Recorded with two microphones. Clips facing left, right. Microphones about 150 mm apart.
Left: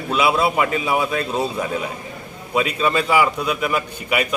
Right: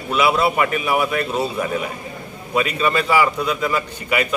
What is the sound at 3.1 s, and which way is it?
A man's voice, 15° left (ahead or behind).